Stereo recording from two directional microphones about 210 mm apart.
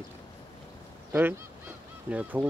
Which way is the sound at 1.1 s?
10° right (ahead or behind).